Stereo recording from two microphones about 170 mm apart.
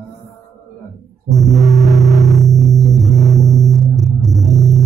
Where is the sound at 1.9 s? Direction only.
Centre (ahead or behind).